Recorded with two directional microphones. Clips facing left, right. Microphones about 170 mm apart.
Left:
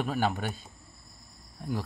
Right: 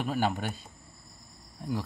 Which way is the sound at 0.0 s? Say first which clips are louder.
Even; 5° right (ahead or behind).